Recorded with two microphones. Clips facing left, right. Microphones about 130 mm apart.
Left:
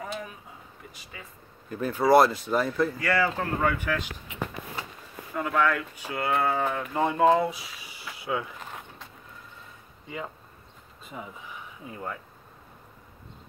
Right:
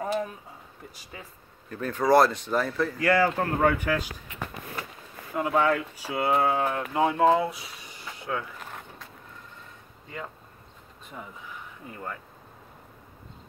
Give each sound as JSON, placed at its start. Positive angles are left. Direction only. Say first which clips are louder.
{"t": 1.7, "sound": "speech", "louder": "left 1 dB", "side_deg": 5}
{"t": 3.0, "sound": "speech", "louder": "right 3 dB", "side_deg": -45}
{"t": 5.3, "sound": "speech", "louder": "right 2 dB", "side_deg": -25}
{"t": 6.5, "sound": "speech", "louder": "right 1 dB", "side_deg": -5}
{"t": 10.0, "sound": "speech", "louder": "left 2 dB", "side_deg": 10}
{"t": 11.8, "sound": "speech", "louder": "left 2 dB", "side_deg": 5}